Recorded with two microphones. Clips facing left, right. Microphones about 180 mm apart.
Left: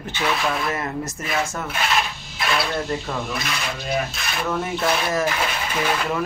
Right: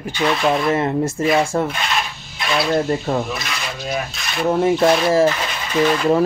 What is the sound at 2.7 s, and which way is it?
Speech, 40° right (ahead or behind).